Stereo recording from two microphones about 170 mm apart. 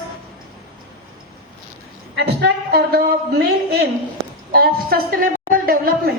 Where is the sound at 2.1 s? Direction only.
75° right (ahead or behind).